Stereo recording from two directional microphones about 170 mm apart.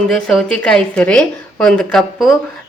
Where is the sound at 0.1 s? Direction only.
Centre (ahead or behind).